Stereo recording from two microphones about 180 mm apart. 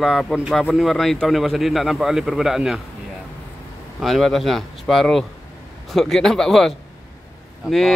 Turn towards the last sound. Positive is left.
turn(degrees=0)  # may be behind; listen again after turning